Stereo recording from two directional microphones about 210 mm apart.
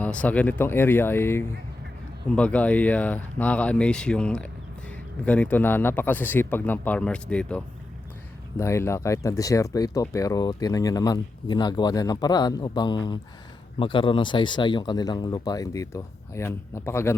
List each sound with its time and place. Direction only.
0.0 s speech: 5° left (ahead or behind)